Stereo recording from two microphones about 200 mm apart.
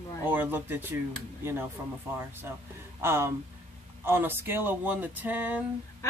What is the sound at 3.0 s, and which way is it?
Speech, 10° right (ahead or behind).